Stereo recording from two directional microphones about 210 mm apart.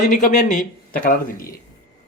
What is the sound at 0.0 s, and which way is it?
Speech, 35° left (ahead or behind).